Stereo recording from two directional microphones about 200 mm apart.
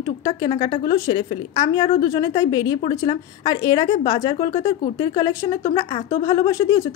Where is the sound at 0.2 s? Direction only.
20° left (ahead or behind).